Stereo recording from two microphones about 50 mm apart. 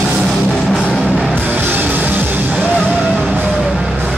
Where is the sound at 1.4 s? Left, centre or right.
Right.